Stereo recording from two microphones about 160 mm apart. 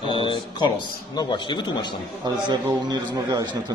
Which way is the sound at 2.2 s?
25° right (ahead or behind).